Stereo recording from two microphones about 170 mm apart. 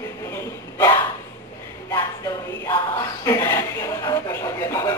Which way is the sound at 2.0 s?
20° left (ahead or behind).